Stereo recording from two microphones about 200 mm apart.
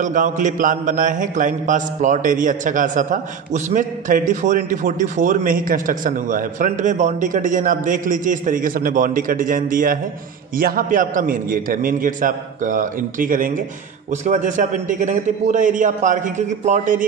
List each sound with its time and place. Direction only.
0.0 s mantra: 40° right (ahead or behind)
10.6 s a man's voice: 45° right (ahead or behind)
14.2 s mantra: 40° right (ahead or behind)